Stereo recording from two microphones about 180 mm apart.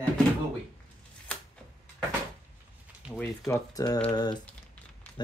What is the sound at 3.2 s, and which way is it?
Speech, 15° left (ahead or behind).